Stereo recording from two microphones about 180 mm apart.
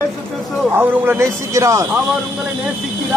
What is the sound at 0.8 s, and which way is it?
A man's voice, 10° right (ahead or behind).